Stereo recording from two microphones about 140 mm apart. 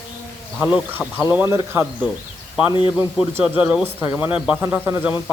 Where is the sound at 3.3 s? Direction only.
10° right (ahead or behind).